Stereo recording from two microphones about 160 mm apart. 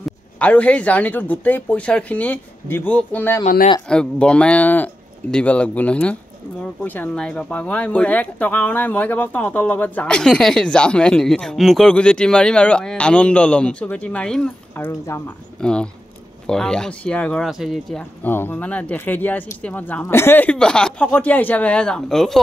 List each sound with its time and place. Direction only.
0.0 s speech: 10° left (ahead or behind)
14.9 s speech: 20° left (ahead or behind)
15.6 s speech: 5° left (ahead or behind)
18.2 s speech: 10° left (ahead or behind)